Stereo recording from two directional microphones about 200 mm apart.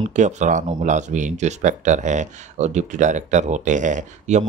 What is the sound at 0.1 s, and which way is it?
Speech, 35° right (ahead or behind).